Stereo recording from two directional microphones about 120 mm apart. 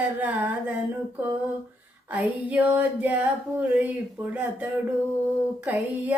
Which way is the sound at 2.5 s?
10° right (ahead or behind).